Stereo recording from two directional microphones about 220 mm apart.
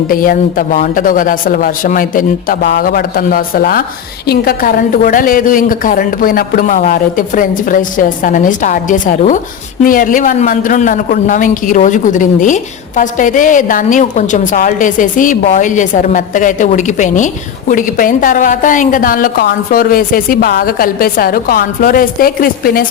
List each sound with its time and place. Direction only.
0.1 s a man's voice: 40° left (ahead or behind)